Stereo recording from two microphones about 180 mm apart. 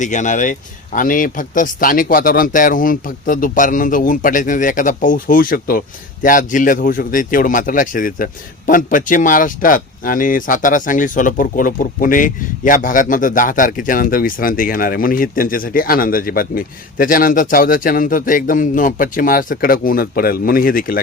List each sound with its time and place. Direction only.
0.0 s speech: 45° left (ahead or behind)